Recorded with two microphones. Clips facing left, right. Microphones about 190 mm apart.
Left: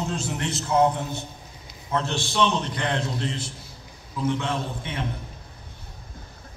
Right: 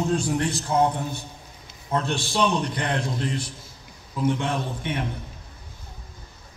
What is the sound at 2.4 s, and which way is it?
A man's voice, 25° left (ahead or behind).